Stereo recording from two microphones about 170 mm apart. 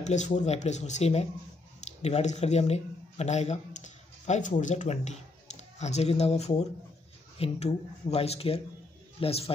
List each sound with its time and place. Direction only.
0.0 s speech: 45° left (ahead or behind)